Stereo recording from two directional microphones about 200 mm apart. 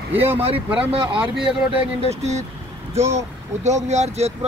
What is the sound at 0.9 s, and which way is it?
Speech, 25° right (ahead or behind).